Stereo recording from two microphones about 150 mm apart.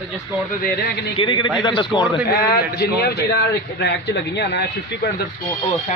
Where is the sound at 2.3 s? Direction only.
90° left.